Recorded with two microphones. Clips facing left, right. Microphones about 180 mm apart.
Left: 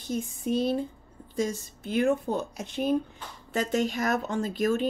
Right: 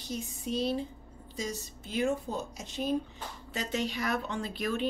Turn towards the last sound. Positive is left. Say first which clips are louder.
# left 6 dB
turn(degrees=45)  # may be behind; listen again after turning